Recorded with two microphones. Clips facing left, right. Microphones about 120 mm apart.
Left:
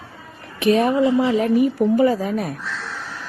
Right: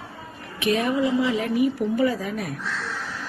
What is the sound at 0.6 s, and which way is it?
A woman's voice, 35° left (ahead or behind).